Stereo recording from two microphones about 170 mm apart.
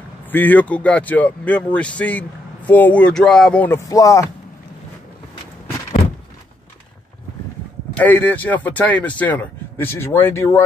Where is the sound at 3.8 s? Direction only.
20° left (ahead or behind).